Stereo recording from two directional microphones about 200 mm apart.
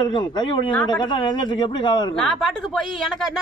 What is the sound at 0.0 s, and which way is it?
Speech, 20° left (ahead or behind).